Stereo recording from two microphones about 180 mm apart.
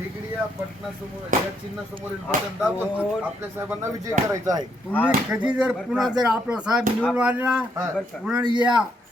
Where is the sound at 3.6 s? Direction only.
15° right (ahead or behind).